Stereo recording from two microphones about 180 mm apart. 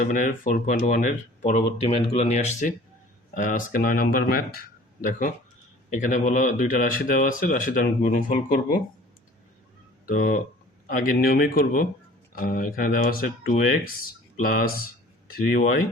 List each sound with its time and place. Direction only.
0.0 s speech: 50° left (ahead or behind)
4.9 s speech: 45° left (ahead or behind)
10.1 s speech: 50° left (ahead or behind)